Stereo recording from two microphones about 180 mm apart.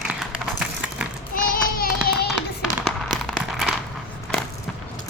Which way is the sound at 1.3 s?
55° left (ahead or behind).